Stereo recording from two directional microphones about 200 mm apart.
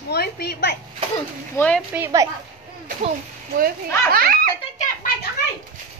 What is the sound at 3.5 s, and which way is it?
Speech, 45° right (ahead or behind).